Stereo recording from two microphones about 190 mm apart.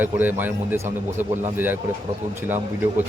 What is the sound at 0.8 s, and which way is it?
Speech, 40° right (ahead or behind).